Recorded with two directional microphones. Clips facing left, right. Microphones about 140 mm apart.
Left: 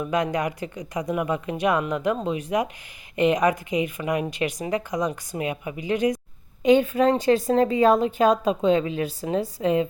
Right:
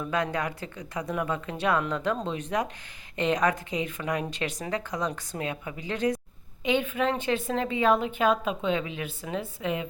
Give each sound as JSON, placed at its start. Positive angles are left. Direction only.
{"t": 0.0, "sound": "a woman's voice", "side_deg": 15}
{"t": 6.6, "sound": "a woman's voice", "side_deg": 40}